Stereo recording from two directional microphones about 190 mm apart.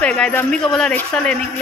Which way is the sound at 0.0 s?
5° left (ahead or behind).